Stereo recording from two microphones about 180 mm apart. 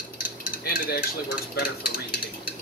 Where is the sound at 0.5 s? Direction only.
55° left (ahead or behind).